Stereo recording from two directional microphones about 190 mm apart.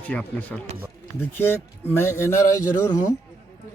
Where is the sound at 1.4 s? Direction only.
10° left (ahead or behind).